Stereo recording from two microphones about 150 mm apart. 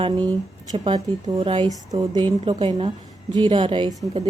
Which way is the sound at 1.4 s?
35° right (ahead or behind).